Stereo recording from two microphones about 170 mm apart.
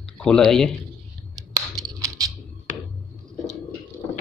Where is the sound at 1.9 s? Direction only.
20° right (ahead or behind).